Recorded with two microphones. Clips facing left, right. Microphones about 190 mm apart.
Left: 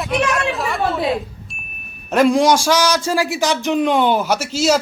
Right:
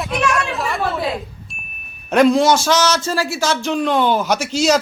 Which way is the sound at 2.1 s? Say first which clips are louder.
Right 1 dB; 10° left (ahead or behind).